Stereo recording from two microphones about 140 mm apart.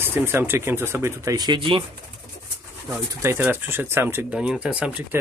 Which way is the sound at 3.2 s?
15° right (ahead or behind).